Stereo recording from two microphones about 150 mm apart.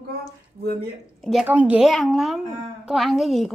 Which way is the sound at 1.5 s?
10° right (ahead or behind).